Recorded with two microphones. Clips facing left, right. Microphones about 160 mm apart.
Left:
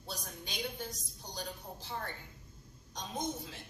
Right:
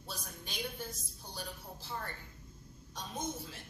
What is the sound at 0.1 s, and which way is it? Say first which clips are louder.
A woman's voice: left 2 dB; 15° left (ahead or behind).